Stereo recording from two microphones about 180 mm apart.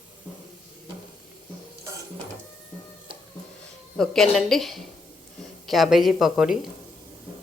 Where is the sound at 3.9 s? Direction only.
Centre (ahead or behind).